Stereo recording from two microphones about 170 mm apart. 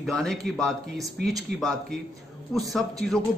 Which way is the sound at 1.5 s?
70° right (ahead or behind).